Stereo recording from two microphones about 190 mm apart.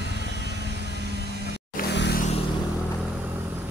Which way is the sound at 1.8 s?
60° left (ahead or behind).